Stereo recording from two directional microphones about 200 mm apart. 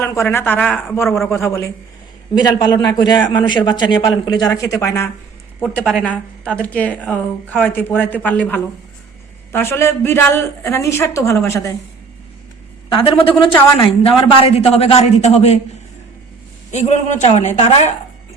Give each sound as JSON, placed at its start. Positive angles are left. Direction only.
{"t": 0.0, "sound": "a woman's voice", "side_deg": 15}
{"t": 5.5, "sound": "a woman's voice", "side_deg": 5}
{"t": 12.9, "sound": "a man's voice", "side_deg": 25}
{"t": 16.7, "sound": "a woman's voice", "side_deg": 35}